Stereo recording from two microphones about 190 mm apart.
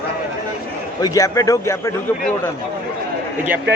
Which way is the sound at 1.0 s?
15° left (ahead or behind).